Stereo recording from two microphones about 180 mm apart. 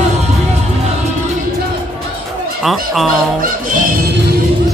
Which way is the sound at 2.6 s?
Centre (ahead or behind).